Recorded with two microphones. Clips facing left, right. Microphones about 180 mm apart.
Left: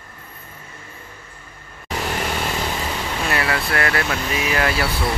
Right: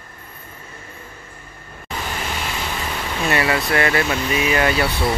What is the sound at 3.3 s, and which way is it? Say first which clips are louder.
Speech: right 4 dB; centre (ahead or behind).